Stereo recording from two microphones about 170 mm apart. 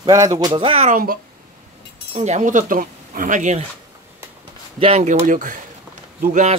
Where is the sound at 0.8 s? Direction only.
55° right (ahead or behind).